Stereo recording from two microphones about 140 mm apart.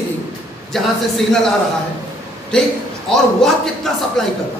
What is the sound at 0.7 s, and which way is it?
Speech, centre (ahead or behind).